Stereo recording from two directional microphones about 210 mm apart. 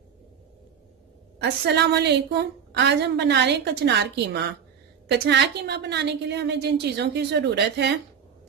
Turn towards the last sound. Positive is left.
turn(degrees=-55)  # may be behind; listen again after turning